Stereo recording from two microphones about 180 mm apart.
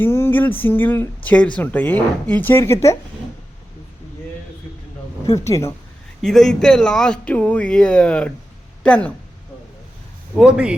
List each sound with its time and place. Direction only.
0.0 s speech: 15° left (ahead or behind)
5.2 s speech: 20° left (ahead or behind)
6.2 s speech: centre (ahead or behind)
10.3 s speech: 5° right (ahead or behind)